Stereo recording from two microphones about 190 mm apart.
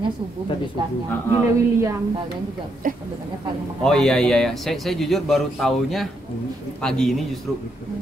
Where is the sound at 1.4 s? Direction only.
15° right (ahead or behind).